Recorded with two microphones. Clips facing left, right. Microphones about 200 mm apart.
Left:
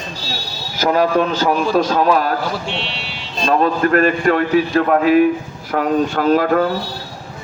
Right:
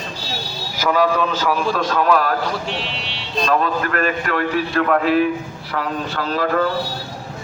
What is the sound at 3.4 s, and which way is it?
A man's voice, 35° left (ahead or behind).